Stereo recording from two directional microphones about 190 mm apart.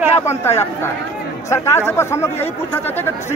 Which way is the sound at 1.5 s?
15° left (ahead or behind).